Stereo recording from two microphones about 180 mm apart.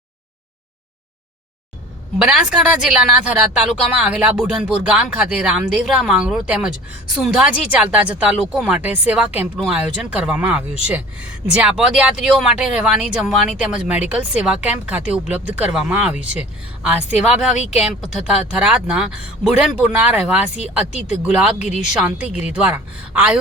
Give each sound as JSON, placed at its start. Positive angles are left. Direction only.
{"t": 2.2, "sound": "speech", "side_deg": -5}
{"t": 17.2, "sound": "speech", "side_deg": -5}